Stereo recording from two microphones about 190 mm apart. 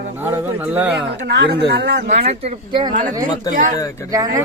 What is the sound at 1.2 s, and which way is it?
Speech, 65° right (ahead or behind).